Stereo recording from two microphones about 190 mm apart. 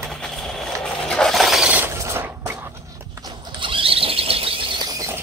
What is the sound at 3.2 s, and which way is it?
Squeal, 25° right (ahead or behind).